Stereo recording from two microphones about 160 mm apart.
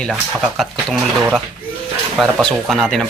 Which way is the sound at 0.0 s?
Centre (ahead or behind).